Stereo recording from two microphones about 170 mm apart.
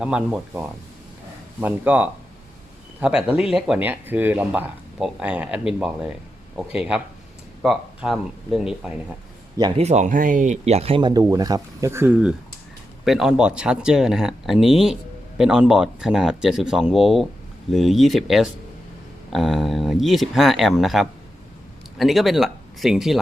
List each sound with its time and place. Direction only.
0.0 s speech: 5° right (ahead or behind)
9.7 s speech: 40° right (ahead or behind); by 23.2 s centre (ahead or behind)